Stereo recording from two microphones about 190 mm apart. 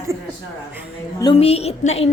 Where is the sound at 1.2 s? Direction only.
30° left (ahead or behind).